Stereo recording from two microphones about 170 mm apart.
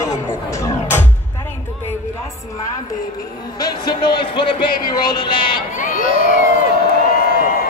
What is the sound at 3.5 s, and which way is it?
A man's voice, 25° left (ahead or behind).